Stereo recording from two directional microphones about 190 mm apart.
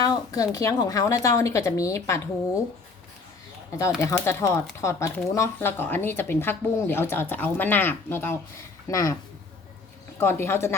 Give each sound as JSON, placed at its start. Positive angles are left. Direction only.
{"t": 0.0, "sound": "speech", "side_deg": 20}
{"t": 4.0, "sound": "speech", "side_deg": 15}
{"t": 10.2, "sound": "speech", "side_deg": 10}